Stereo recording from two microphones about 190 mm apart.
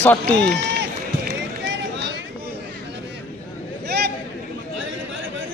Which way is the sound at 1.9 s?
70° right (ahead or behind).